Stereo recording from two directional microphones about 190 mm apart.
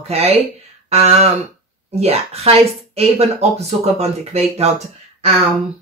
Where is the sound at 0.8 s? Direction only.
35° right (ahead or behind).